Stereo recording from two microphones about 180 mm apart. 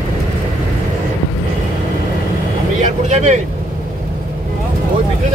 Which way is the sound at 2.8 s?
40° right (ahead or behind).